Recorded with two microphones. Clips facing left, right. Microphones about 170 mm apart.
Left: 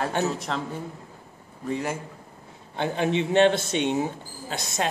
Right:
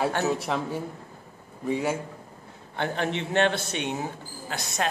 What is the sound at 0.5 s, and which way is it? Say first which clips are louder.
Speech: right 2 dB; 10° right (ahead or behind).